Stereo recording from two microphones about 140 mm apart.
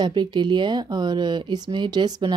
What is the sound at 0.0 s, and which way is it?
A woman's voice, 35° right (ahead or behind).